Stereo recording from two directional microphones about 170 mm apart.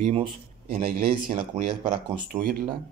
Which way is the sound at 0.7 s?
55° right (ahead or behind).